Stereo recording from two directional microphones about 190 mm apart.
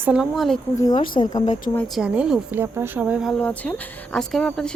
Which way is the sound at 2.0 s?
5° right (ahead or behind).